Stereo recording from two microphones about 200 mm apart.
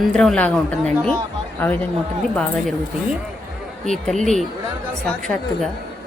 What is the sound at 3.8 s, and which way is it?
A woman's voice, centre (ahead or behind).